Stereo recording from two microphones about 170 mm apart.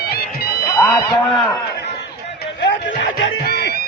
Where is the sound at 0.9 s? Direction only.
Centre (ahead or behind).